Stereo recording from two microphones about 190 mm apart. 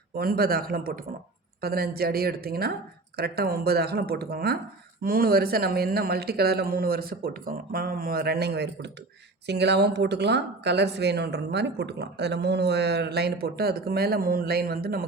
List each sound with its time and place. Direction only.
0.2 s speech: 55° right (ahead or behind)